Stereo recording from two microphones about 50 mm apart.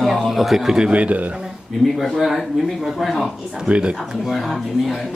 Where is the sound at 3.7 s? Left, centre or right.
Centre.